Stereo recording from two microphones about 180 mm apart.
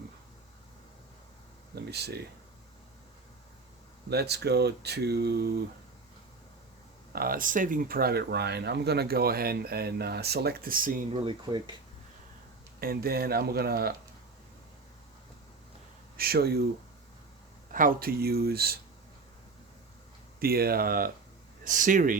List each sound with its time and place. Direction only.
1.7 s speech: 65° right (ahead or behind)
4.1 s speech: 65° right (ahead or behind)
7.1 s speech: 55° right (ahead or behind)
11.1 s speech: 25° right (ahead or behind)
12.8 s speech: 55° right (ahead or behind)
16.1 s speech: 60° right (ahead or behind)
17.7 s speech: 50° right (ahead or behind)
20.4 s speech: 55° right (ahead or behind)